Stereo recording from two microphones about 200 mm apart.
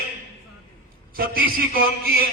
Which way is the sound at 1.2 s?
45° right (ahead or behind).